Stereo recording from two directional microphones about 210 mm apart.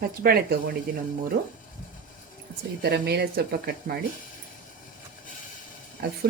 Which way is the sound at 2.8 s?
50° right (ahead or behind).